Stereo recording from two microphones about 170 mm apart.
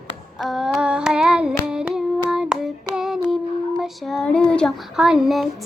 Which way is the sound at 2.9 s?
5° right (ahead or behind).